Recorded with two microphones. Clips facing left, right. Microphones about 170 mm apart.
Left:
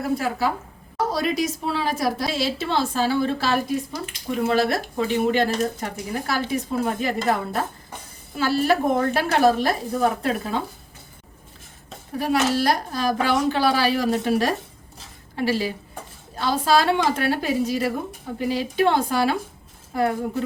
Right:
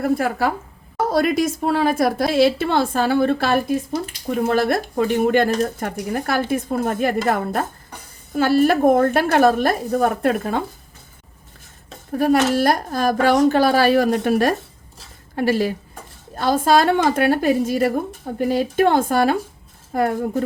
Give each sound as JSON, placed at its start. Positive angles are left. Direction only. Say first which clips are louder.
{"t": 0.0, "sound": "a woman's voice", "louder": "right 4 dB", "side_deg": -55}
{"t": 12.1, "sound": "speech", "louder": "right 5 dB", "side_deg": -50}